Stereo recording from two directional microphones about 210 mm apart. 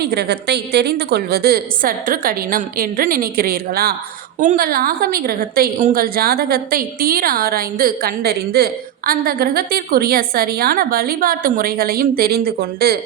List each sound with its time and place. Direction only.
0.0 s a woman's voice: 50° right (ahead or behind)